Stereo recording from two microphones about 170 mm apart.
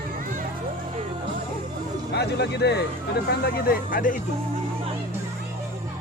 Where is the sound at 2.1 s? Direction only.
75° left (ahead or behind).